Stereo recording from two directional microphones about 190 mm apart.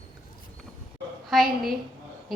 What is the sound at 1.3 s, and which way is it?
Speech, centre (ahead or behind).